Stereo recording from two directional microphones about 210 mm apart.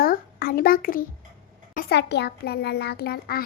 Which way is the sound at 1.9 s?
55° left (ahead or behind).